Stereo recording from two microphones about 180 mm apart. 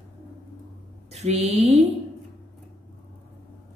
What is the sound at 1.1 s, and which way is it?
Speech, 35° right (ahead or behind).